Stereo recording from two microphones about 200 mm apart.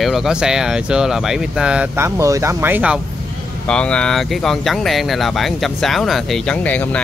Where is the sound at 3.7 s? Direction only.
5° left (ahead or behind).